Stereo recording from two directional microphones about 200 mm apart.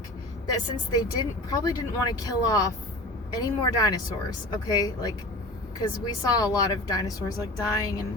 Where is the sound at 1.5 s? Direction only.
20° left (ahead or behind).